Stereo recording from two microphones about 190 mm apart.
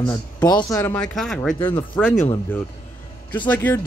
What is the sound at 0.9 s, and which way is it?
Speech, 5° left (ahead or behind).